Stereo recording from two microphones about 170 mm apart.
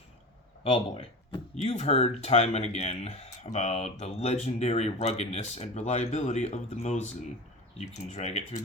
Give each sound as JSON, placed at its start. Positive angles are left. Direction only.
{"t": 0.6, "sound": "speech", "side_deg": 30}